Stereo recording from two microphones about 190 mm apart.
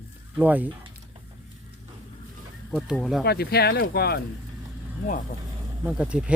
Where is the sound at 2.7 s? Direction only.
Centre (ahead or behind).